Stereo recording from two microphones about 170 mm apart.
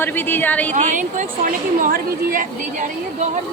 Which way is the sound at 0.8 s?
50° right (ahead or behind).